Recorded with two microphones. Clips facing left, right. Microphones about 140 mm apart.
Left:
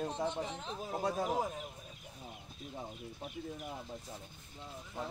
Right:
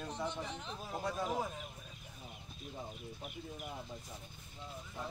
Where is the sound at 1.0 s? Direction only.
40° left (ahead or behind).